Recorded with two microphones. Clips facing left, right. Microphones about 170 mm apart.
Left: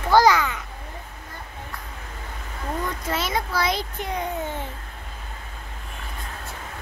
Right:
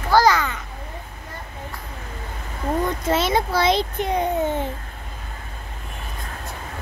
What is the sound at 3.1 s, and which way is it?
A child's voice, 25° right (ahead or behind).